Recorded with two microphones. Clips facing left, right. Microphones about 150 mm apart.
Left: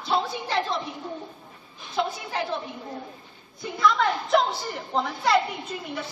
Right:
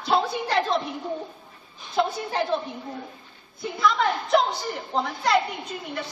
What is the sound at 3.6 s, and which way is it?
A woman's voice, centre (ahead or behind).